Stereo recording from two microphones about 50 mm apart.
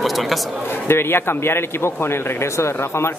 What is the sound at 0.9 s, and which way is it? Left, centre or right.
A man's voice, left.